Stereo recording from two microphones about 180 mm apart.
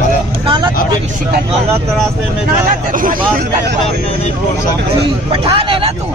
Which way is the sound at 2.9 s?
50° right (ahead or behind).